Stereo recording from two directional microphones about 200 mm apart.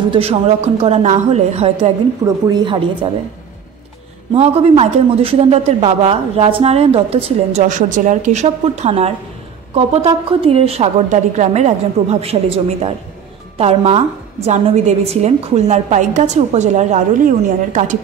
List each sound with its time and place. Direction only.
0.1 s a man's voice: 30° right (ahead or behind)
2.2 s a woman's voice: 20° right (ahead or behind)
4.3 s a man's voice: 30° right (ahead or behind)